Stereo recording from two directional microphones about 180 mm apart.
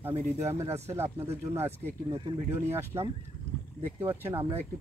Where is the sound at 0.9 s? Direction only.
15° right (ahead or behind).